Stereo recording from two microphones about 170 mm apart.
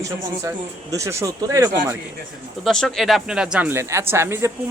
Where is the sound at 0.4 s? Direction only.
20° right (ahead or behind).